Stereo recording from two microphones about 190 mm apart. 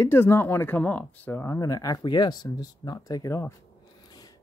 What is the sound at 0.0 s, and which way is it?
Speech, 15° left (ahead or behind).